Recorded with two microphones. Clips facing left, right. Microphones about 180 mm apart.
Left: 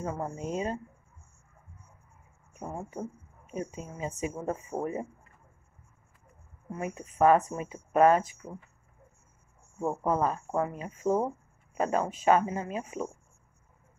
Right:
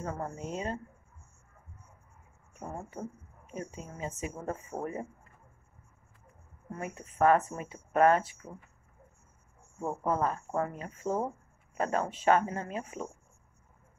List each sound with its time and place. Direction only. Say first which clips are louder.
0.0 s speech: left 3 dB; 15° left (ahead or behind)
2.6 s speech: left 3 dB; 15° left (ahead or behind)
6.7 s speech: left 4 dB; 15° left (ahead or behind)
9.8 s speech: left 3 dB; 15° left (ahead or behind)